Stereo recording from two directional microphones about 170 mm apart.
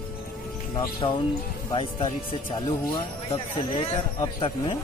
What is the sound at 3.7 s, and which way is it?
Speech, 30° left (ahead or behind).